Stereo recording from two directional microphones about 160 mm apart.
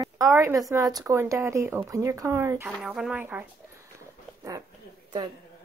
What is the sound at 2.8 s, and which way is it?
Speech, 5° right (ahead or behind).